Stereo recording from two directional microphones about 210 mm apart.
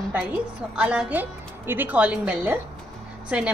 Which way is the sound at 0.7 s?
5° right (ahead or behind).